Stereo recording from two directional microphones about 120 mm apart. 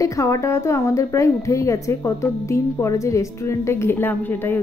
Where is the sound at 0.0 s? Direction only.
25° left (ahead or behind).